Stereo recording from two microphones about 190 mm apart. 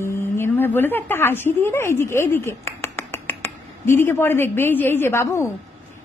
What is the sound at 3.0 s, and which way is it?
Finger snapping, 10° left (ahead or behind).